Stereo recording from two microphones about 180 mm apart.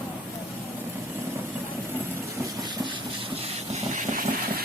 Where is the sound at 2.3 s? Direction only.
20° right (ahead or behind).